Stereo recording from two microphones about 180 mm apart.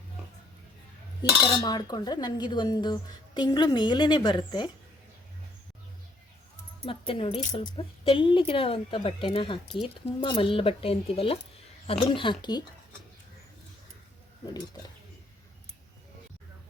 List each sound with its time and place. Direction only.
1.2 s speech: 20° left (ahead or behind)
6.8 s speech: 30° left (ahead or behind)
14.4 s speech: 20° left (ahead or behind)